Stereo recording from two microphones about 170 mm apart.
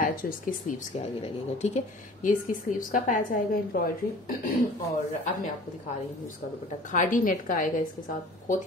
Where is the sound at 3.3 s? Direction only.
55° left (ahead or behind).